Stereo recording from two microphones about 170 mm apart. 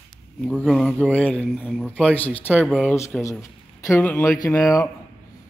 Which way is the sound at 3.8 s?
15° left (ahead or behind).